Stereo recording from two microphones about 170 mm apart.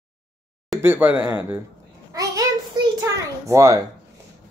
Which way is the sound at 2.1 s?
20° right (ahead or behind).